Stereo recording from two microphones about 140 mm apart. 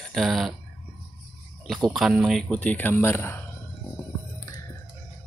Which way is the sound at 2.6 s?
10° left (ahead or behind).